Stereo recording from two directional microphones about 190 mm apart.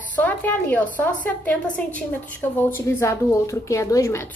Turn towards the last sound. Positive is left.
turn(degrees=15)  # may be behind; listen again after turning